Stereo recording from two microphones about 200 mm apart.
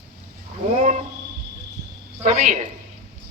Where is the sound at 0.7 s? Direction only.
35° right (ahead or behind).